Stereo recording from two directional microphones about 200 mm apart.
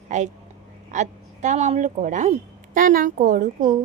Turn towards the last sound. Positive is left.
turn(degrees=-40)  # may be behind; listen again after turning